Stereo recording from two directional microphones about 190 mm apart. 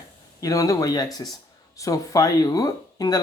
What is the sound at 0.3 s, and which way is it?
Speech, 20° left (ahead or behind).